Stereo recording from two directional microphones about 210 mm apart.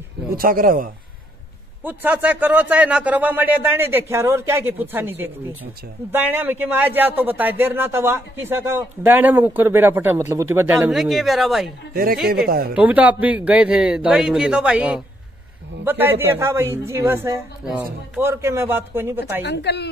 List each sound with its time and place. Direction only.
0.4 s speech: 40° right (ahead or behind)
1.9 s a man's voice: 10° right (ahead or behind)
11.9 s speech: 45° right (ahead or behind)
12.7 s a man's voice: 5° right (ahead or behind)
19.4 s a woman's voice: 55° left (ahead or behind)